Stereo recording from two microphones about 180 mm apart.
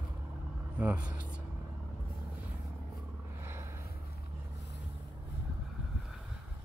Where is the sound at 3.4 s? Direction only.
15° right (ahead or behind).